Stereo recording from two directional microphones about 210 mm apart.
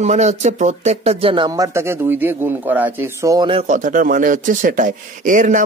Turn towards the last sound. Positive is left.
turn(degrees=-35)  # may be behind; listen again after turning